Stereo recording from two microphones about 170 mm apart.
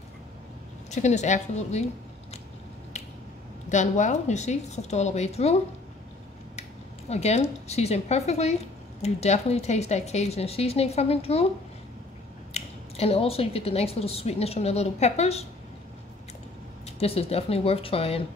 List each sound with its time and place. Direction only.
0.8 s a woman's voice: 45° left (ahead or behind)
3.6 s speech: 45° left (ahead or behind)
7.1 s speech: 40° left (ahead or behind)
12.5 s speech: 35° left (ahead or behind)
16.8 s speech: 35° left (ahead or behind)